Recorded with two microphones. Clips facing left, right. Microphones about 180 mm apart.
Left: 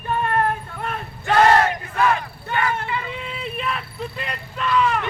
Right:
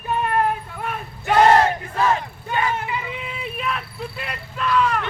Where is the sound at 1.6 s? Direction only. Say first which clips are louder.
Right 1 dB; 25° right (ahead or behind).